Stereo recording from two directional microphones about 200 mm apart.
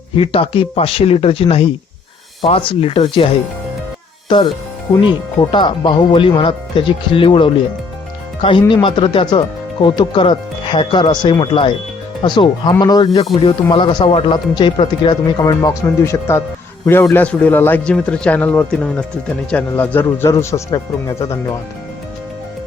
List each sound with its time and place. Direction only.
0.2 s speech: 25° left (ahead or behind)
4.3 s a man's voice: 25° left (ahead or behind)